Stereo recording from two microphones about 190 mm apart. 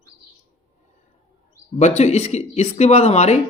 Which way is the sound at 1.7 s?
35° left (ahead or behind).